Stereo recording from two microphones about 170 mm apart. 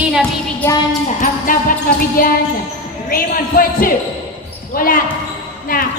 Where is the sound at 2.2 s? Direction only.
55° left (ahead or behind).